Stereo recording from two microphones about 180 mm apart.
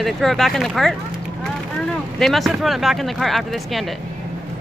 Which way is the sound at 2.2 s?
Centre (ahead or behind).